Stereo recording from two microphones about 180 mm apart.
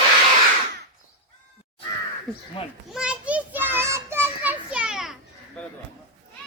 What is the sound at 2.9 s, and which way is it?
Children playing, 5° right (ahead or behind).